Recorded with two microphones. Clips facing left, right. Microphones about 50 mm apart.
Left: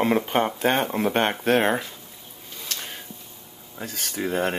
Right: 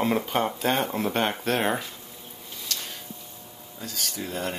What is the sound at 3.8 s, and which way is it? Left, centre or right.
Speech, left.